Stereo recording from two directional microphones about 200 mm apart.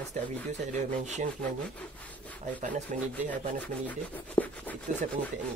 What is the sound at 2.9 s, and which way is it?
Speech, 35° right (ahead or behind).